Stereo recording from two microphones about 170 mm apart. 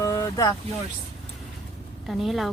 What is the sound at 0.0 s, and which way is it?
Boat, 20° left (ahead or behind).